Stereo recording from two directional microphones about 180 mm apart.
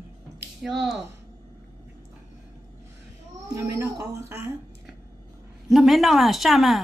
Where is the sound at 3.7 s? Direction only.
15° right (ahead or behind).